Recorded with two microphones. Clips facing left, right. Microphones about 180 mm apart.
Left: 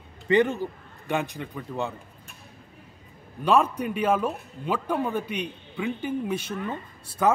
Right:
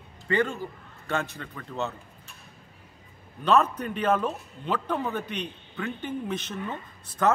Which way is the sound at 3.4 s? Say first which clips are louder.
Left 1 dB; 10° left (ahead or behind).